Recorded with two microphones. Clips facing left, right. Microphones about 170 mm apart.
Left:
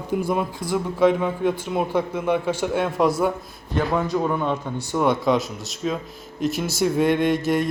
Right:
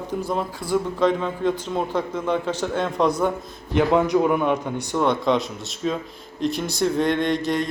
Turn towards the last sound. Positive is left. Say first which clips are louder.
# left 2 dB
turn(degrees=5)  # may be behind; listen again after turning